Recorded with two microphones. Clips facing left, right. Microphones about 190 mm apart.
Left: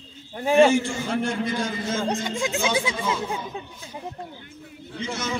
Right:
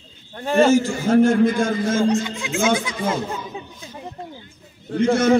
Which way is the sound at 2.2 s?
45° left (ahead or behind).